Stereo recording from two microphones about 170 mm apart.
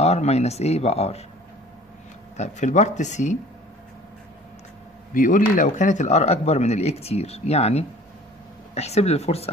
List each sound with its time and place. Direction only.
0.0 s speech: 40° left (ahead or behind)
2.3 s speech: 45° left (ahead or behind)
5.1 s speech: 50° left (ahead or behind)